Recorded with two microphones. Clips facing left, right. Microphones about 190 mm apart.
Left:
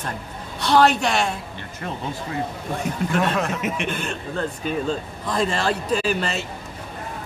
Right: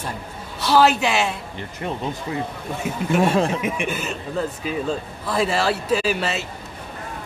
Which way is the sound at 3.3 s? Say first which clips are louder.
Right 4 dB; 30° right (ahead or behind).